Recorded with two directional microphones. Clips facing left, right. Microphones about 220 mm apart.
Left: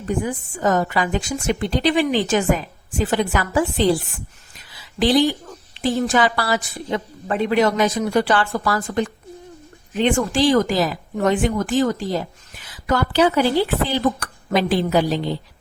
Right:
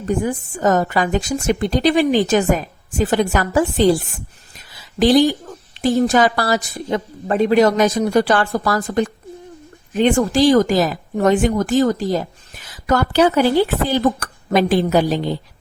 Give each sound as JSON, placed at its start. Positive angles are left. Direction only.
{"t": 0.3, "sound": "a woman's voice", "side_deg": -45}
{"t": 4.9, "sound": "a woman's voice", "side_deg": -45}